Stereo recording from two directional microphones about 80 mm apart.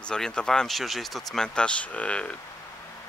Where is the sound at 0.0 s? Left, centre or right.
Centre.